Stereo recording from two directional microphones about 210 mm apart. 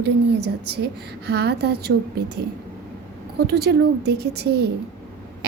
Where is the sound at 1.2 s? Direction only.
50° right (ahead or behind).